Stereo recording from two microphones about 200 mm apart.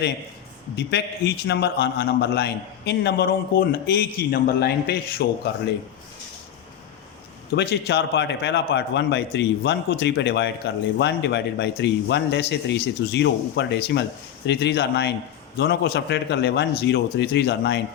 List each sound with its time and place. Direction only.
0.8 s a man's voice: 60° left (ahead or behind)
7.5 s a man's voice: 55° left (ahead or behind)